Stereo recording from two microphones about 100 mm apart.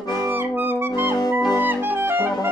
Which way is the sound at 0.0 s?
40° left (ahead or behind).